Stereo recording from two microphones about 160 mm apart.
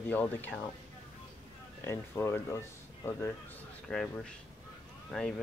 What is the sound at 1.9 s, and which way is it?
Speech, 15° left (ahead or behind).